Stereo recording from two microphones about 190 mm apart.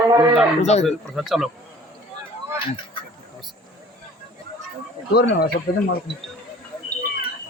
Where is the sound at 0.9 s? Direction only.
Centre (ahead or behind).